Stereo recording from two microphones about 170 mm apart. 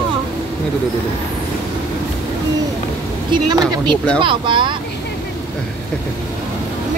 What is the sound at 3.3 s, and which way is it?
Speech, 25° right (ahead or behind).